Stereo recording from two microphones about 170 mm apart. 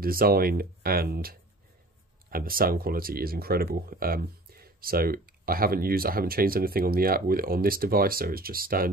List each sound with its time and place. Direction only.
0.0 s speech: 60° right (ahead or behind)